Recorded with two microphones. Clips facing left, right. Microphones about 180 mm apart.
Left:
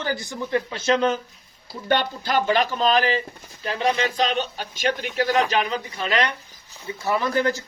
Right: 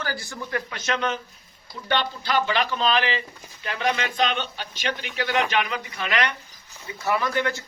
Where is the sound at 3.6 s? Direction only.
30° left (ahead or behind).